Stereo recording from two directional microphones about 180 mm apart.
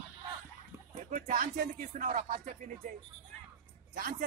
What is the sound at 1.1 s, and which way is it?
Speech, 45° right (ahead or behind).